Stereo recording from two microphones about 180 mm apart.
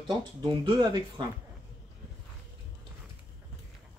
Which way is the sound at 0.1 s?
25° right (ahead or behind).